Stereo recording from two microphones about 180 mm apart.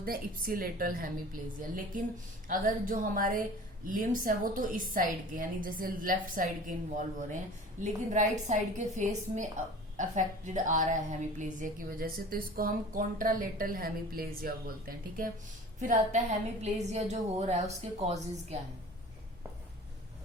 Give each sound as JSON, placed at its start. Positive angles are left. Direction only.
{"t": 0.0, "sound": "a woman's voice", "side_deg": -55}
{"t": 15.8, "sound": "a woman's voice", "side_deg": -45}